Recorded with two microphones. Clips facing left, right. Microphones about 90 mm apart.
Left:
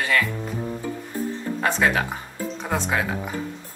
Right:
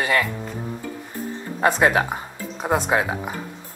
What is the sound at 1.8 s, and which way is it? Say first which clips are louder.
Speech: right 3 dB; 25° right (ahead or behind).